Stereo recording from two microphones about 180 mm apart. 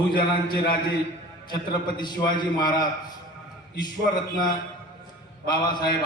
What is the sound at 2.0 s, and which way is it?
Speech, 25° left (ahead or behind).